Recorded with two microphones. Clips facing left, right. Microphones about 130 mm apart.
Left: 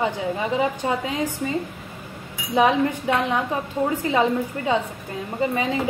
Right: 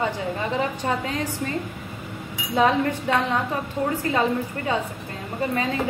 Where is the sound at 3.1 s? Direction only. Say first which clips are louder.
Left 1 dB; 15° left (ahead or behind).